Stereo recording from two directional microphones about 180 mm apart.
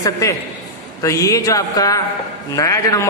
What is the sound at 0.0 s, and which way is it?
A man's voice, 15° left (ahead or behind).